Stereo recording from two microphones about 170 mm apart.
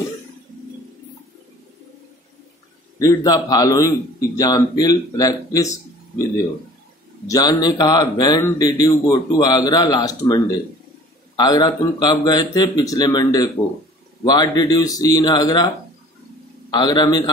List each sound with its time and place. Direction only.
3.0 s speech: 20° left (ahead or behind)
7.2 s speech: 20° left (ahead or behind)
16.7 s speech: 25° left (ahead or behind)